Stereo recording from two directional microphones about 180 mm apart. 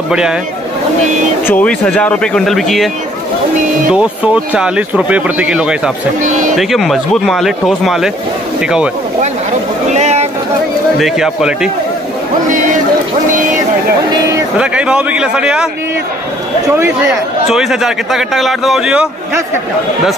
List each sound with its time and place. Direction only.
0.1 s speech: 5° right (ahead or behind)
1.5 s speech: 5° left (ahead or behind)
3.9 s speech: 5° right (ahead or behind)
6.2 s a man's voice: 45° right (ahead or behind)
6.5 s speech: centre (ahead or behind)
9.9 s a sound: 40° right (ahead or behind)
11.0 s speech: centre (ahead or behind)
12.4 s speech: 45° right (ahead or behind)
13.3 s a sound: 45° right (ahead or behind)
14.6 s speech: 5° right (ahead or behind)
16.7 s speech: 15° right (ahead or behind)
17.5 s speech: centre (ahead or behind)